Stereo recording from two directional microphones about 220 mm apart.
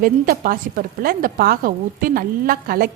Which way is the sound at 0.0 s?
40° right (ahead or behind).